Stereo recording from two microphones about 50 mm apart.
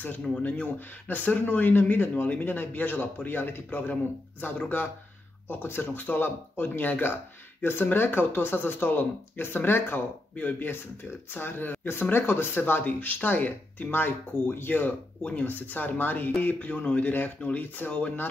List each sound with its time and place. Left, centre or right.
0.4 s speech: left